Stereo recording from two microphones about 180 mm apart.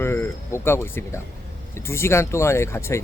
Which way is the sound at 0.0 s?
15° left (ahead or behind).